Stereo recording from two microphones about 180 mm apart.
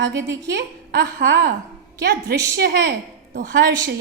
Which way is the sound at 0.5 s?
70° right (ahead or behind).